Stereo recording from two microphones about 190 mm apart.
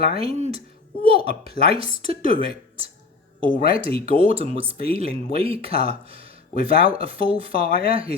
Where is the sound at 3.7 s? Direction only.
30° right (ahead or behind).